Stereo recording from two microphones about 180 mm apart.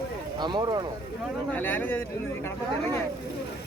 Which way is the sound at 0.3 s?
25° right (ahead or behind).